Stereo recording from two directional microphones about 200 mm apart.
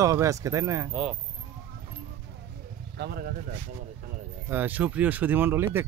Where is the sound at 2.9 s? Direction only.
50° right (ahead or behind).